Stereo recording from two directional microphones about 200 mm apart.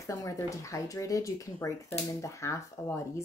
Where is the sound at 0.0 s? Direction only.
15° left (ahead or behind).